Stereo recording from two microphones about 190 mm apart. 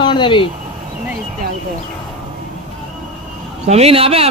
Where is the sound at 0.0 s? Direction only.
25° left (ahead or behind).